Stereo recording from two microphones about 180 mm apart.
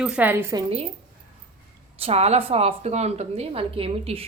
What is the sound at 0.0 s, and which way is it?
Speech, 5° right (ahead or behind).